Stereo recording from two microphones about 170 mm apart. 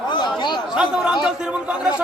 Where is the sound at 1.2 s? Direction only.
5° right (ahead or behind).